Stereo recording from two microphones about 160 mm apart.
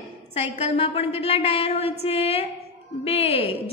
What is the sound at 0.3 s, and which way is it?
A woman's voice, 40° left (ahead or behind).